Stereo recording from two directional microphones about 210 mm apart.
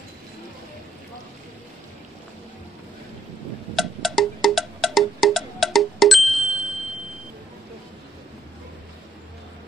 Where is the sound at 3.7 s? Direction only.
Centre (ahead or behind).